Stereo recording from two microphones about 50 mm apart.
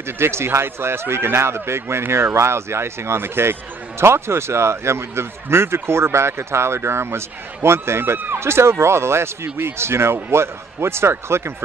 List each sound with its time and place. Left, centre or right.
0.0 s speech: right